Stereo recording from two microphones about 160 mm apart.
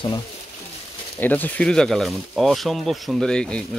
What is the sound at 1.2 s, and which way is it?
Speech, 10° left (ahead or behind).